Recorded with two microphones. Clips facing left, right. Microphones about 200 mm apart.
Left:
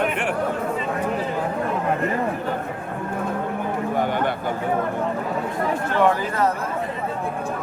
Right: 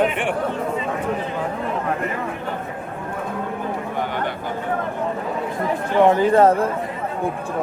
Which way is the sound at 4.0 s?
50° left (ahead or behind).